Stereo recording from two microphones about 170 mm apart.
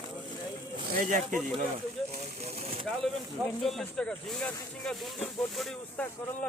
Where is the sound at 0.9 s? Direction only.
50° right (ahead or behind).